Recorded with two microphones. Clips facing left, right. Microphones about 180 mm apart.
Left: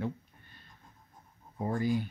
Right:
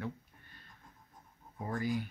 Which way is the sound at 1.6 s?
30° left (ahead or behind).